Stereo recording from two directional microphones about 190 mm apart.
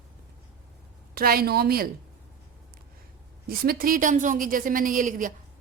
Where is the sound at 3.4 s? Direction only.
50° right (ahead or behind).